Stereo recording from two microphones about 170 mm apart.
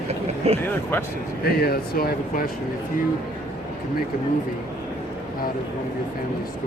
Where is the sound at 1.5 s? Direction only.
65° left (ahead or behind).